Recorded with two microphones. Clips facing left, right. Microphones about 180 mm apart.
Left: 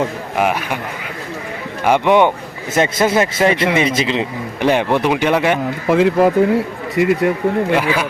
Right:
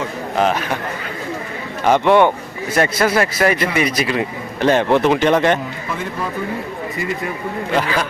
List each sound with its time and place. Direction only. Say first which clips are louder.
0.3 s speech: even; 10° left (ahead or behind)
1.8 s a man's voice: even; 10° left (ahead or behind)
5.9 s speech: left 14 dB; 90° left
7.7 s speech: left 2 dB; 10° left (ahead or behind)